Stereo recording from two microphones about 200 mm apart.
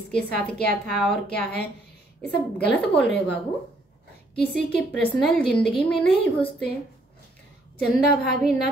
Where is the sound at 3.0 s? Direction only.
5° left (ahead or behind).